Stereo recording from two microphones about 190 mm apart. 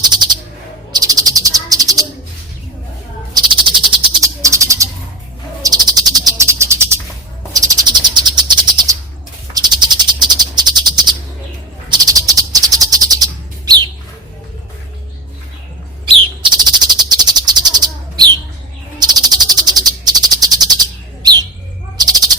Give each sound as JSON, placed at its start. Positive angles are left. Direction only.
{"t": 0.0, "sound": "bird", "side_deg": -20}
{"t": 0.9, "sound": "cricket", "side_deg": -20}
{"t": 3.3, "sound": "bird", "side_deg": -25}
{"t": 5.6, "sound": "cricket", "side_deg": -20}
{"t": 7.5, "sound": "bird", "side_deg": -20}
{"t": 9.5, "sound": "cricket", "side_deg": -20}
{"t": 11.9, "sound": "bird", "side_deg": -20}
{"t": 16.0, "sound": "bird", "side_deg": -25}
{"t": 18.9, "sound": "cricket", "side_deg": -20}
{"t": 21.9, "sound": "owl", "side_deg": -20}